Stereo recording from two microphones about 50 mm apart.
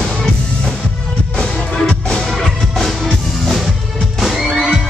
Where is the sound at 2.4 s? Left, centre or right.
Centre.